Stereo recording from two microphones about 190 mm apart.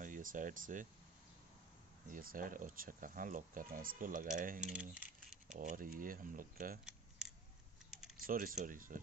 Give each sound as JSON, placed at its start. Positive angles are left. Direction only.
{"t": 0.0, "sound": "speech", "side_deg": -45}
{"t": 2.0, "sound": "speech", "side_deg": -45}
{"t": 4.7, "sound": "speech", "side_deg": -5}
{"t": 5.5, "sound": "speech", "side_deg": -45}
{"t": 6.8, "sound": "scissors", "side_deg": -5}
{"t": 8.2, "sound": "speech", "side_deg": -45}